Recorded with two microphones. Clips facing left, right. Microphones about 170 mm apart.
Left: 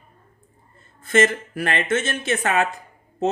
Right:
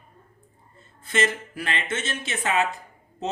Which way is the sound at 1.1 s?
50° left (ahead or behind).